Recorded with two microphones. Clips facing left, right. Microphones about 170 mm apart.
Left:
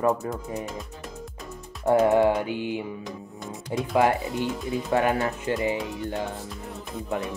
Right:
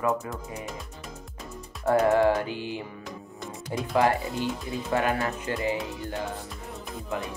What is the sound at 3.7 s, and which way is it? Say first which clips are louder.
Speech: left 2 dB; 20° left (ahead or behind).